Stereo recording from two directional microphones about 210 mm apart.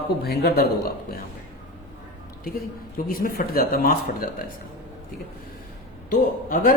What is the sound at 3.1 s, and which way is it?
Speech, 45° left (ahead or behind).